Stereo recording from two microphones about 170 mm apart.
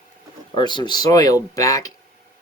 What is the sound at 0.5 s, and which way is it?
Speech, 25° left (ahead or behind).